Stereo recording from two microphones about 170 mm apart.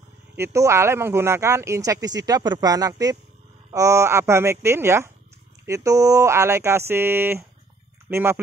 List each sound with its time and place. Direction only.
0.4 s speech: 15° right (ahead or behind)